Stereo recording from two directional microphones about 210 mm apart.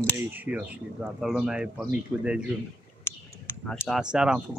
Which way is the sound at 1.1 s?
Centre (ahead or behind).